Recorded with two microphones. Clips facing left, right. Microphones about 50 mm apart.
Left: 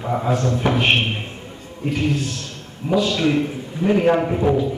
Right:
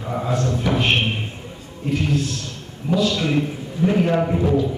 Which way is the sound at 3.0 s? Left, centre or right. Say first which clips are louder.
Left 2 dB; left.